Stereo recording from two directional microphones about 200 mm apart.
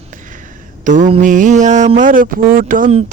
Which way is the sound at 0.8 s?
40° right (ahead or behind).